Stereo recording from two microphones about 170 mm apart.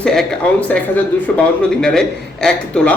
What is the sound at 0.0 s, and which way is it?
Speech, 5° left (ahead or behind).